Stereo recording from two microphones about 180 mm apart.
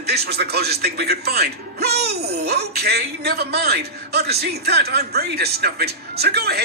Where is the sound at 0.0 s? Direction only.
65° right (ahead or behind).